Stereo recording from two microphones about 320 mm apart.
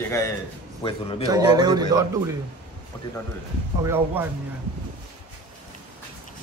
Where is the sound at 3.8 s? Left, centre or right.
Centre.